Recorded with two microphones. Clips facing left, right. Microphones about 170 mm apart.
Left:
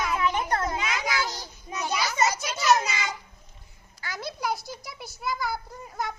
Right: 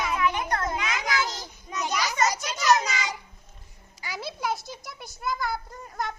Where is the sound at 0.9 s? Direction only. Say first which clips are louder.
Even; 20° right (ahead or behind).